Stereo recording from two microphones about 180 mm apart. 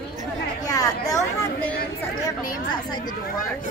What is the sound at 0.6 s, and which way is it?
Chatter, 20° left (ahead or behind).